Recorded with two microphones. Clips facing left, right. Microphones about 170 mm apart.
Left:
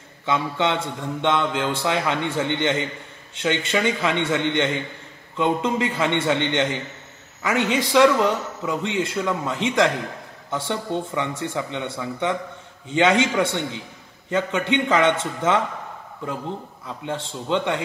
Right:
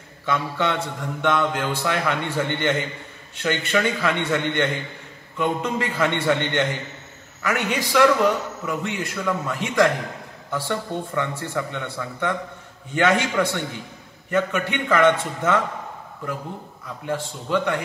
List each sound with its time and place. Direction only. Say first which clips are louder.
0.2 s speech: left 1 dB; 20° left (ahead or behind)
16.8 s speech: right 3 dB; 25° left (ahead or behind)